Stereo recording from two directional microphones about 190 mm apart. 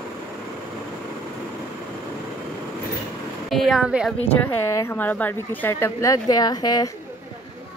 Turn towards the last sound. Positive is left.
turn(degrees=20)  # may be behind; listen again after turning